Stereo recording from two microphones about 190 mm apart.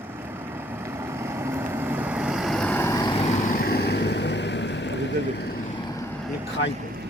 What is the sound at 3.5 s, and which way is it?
Boat, 55° left (ahead or behind).